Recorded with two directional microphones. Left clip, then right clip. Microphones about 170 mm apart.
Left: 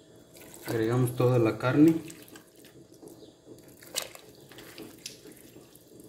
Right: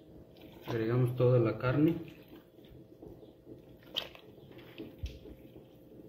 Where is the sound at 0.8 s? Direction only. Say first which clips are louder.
Left 4 dB; 55° left (ahead or behind).